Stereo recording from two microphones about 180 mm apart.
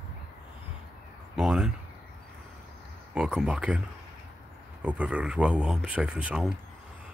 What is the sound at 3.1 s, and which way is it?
Speech, 5° right (ahead or behind).